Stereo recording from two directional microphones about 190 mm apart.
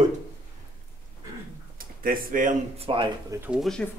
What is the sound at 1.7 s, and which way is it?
Speech, 50° right (ahead or behind).